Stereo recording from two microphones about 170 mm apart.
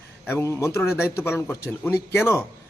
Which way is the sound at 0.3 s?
15° left (ahead or behind).